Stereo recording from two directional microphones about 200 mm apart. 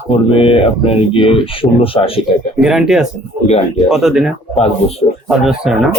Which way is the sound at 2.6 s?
Centre (ahead or behind).